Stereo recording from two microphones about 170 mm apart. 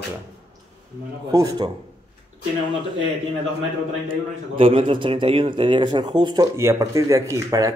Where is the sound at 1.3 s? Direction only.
20° right (ahead or behind).